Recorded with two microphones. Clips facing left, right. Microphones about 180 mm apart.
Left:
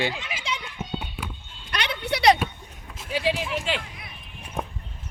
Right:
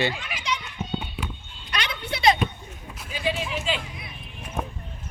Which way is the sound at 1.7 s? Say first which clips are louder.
Left 3 dB; 60° left (ahead or behind).